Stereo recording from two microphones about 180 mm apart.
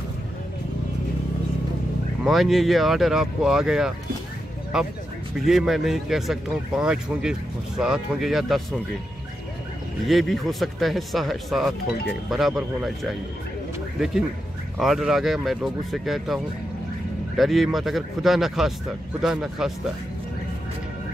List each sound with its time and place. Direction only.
2.2 s speech: centre (ahead or behind)
10.0 s speech: centre (ahead or behind)
13.9 s speech: centre (ahead or behind)